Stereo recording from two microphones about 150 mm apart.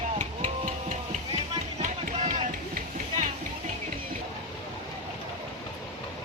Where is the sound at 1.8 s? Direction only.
60° right (ahead or behind).